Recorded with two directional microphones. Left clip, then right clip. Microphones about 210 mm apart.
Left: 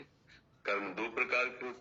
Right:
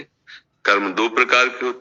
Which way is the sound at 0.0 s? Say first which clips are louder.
Right 17 dB; 45° right (ahead or behind).